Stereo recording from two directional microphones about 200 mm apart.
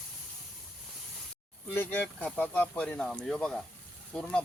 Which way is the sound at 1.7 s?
10° left (ahead or behind).